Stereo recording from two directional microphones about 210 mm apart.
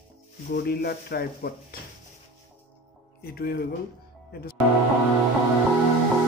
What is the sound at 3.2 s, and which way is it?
Speech, 50° left (ahead or behind).